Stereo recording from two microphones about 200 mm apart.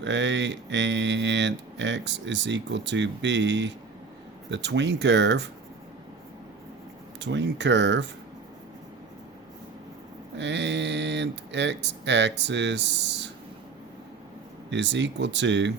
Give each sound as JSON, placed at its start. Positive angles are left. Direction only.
{"t": 0.0, "sound": "speech", "side_deg": -65}
{"t": 7.2, "sound": "speech", "side_deg": -60}
{"t": 10.3, "sound": "speech", "side_deg": -60}
{"t": 14.7, "sound": "speech", "side_deg": -60}